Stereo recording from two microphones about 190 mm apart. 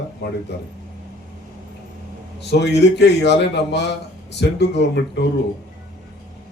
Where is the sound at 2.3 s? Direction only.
65° left (ahead or behind).